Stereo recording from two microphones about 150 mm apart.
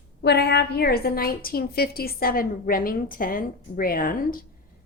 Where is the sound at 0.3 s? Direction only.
90° left.